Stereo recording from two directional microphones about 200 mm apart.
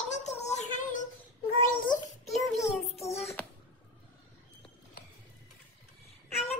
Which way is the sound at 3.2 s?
Centre (ahead or behind).